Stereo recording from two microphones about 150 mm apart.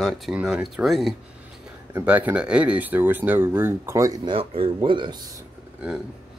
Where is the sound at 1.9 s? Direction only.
10° right (ahead or behind).